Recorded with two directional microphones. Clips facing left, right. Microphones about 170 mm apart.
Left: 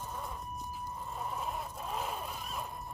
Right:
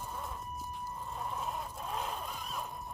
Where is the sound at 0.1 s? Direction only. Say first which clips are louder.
Even; centre (ahead or behind).